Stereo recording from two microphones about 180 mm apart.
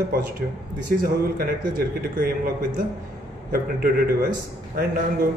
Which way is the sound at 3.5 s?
55° right (ahead or behind).